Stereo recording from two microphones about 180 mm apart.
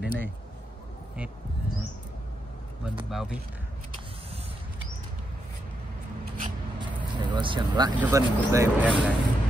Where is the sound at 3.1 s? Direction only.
Centre (ahead or behind).